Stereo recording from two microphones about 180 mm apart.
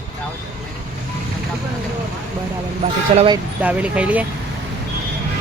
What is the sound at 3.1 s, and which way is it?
Speech, 25° right (ahead or behind).